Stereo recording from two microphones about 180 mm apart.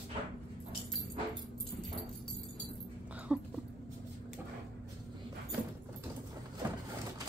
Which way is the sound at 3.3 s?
5° right (ahead or behind).